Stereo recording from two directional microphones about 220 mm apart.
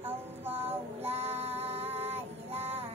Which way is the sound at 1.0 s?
30° right (ahead or behind).